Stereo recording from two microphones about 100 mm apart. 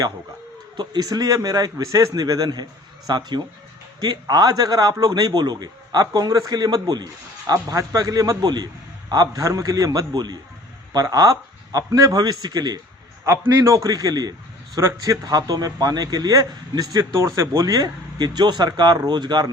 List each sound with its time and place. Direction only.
0.8 s speech: 40° right (ahead or behind)
13.5 s speech: 30° right (ahead or behind)